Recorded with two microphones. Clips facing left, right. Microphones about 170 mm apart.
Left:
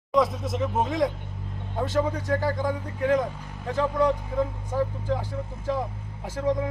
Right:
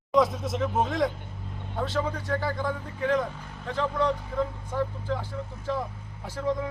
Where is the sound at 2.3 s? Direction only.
15° left (ahead or behind).